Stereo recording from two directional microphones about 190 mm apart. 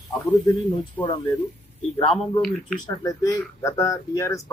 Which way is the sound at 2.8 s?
20° left (ahead or behind).